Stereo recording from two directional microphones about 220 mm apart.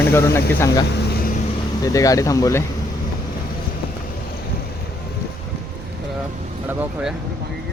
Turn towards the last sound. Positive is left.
turn(degrees=-5)  # may be behind; listen again after turning